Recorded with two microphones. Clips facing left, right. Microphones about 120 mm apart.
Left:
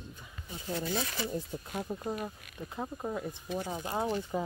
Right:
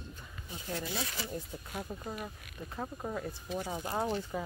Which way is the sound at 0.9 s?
20° left (ahead or behind).